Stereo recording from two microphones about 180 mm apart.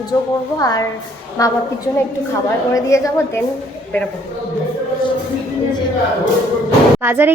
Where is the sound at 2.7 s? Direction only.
15° left (ahead or behind).